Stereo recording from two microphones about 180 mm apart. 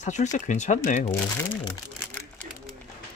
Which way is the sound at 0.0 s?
40° left (ahead or behind).